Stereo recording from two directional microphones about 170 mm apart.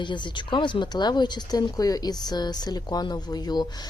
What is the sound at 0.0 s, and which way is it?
Speech, 25° left (ahead or behind).